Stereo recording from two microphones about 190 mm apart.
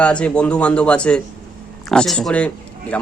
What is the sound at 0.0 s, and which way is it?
A man's voice, 5° left (ahead or behind).